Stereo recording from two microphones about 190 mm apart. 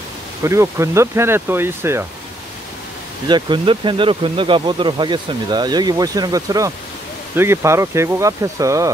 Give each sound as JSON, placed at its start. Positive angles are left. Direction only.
{"t": 0.4, "sound": "speech", "side_deg": -15}
{"t": 3.3, "sound": "speech", "side_deg": -25}